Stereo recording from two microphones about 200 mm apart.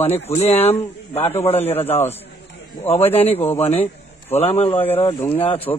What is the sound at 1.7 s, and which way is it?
Speech, 10° left (ahead or behind).